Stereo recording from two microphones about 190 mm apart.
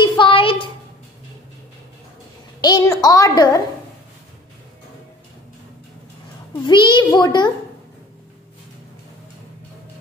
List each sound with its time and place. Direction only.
0.0 s a sound: 25° left (ahead or behind)
2.6 s a woman's voice: 20° left (ahead or behind)
6.6 s a child's voice: 25° left (ahead or behind)